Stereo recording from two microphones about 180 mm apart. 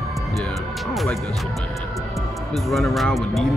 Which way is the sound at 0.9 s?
Centre (ahead or behind).